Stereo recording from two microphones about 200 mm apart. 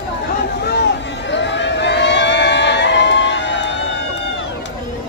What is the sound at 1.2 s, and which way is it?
Crowd, 65° left (ahead or behind).